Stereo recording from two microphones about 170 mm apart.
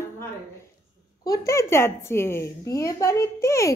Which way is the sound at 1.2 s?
20° left (ahead or behind).